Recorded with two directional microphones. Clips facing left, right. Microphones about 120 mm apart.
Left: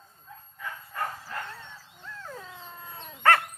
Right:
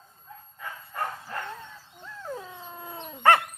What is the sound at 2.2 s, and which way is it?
Dog, 15° right (ahead or behind).